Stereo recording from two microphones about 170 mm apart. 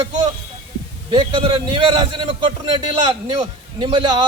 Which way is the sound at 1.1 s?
30° right (ahead or behind).